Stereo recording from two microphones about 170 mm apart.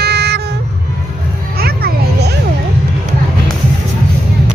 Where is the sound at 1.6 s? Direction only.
65° right (ahead or behind).